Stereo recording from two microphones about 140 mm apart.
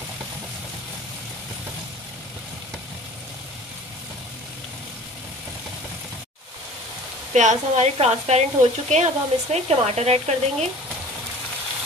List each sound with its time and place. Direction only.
7.3 s speech: 55° right (ahead or behind)